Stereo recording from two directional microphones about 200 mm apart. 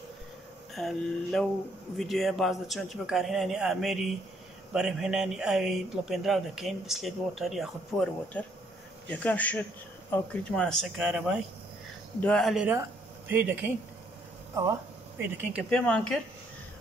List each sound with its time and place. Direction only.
0.7 s speech: centre (ahead or behind)
14.5 s a sound: 15° right (ahead or behind)
15.7 s speech: 5° left (ahead or behind)